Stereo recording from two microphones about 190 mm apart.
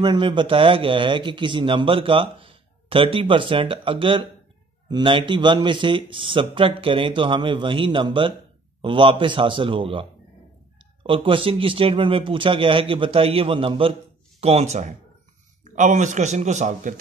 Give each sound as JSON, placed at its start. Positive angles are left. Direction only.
{"t": 0.0, "sound": "a man's voice", "side_deg": -25}
{"t": 11.1, "sound": "a man's voice", "side_deg": -25}